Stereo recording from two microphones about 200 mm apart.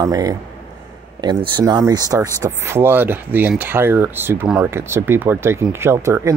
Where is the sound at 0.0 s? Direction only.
15° right (ahead or behind).